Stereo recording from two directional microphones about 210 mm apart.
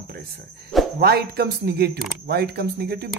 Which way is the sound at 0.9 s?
50° right (ahead or behind).